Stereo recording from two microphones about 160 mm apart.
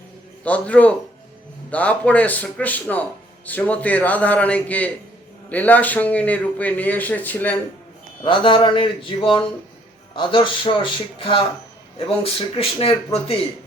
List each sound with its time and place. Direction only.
0.4 s speech: 10° left (ahead or behind)
8.2 s speech: 30° left (ahead or behind)
10.2 s speech: 30° left (ahead or behind)